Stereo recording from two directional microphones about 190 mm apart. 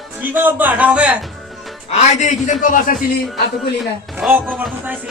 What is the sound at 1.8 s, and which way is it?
A man's voice, 35° left (ahead or behind).